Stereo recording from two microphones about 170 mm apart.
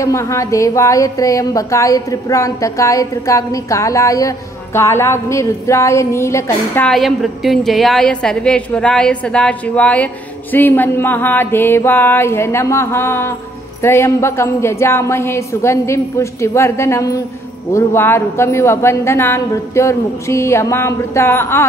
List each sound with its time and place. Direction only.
0.0 s a woman's voice: 15° left (ahead or behind)
6.9 s a woman's voice: centre (ahead or behind)